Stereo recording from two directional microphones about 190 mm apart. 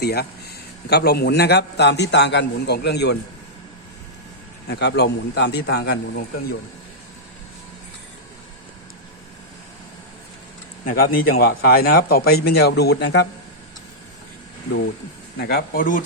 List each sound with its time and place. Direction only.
0.0 s a man's voice: 55° left (ahead or behind)
4.7 s a man's voice: 60° left (ahead or behind)
10.8 s a man's voice: 50° left (ahead or behind)
15.4 s speech: 60° left (ahead or behind)